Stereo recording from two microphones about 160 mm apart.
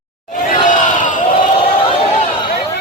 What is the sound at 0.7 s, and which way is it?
Battle cry, 50° left (ahead or behind).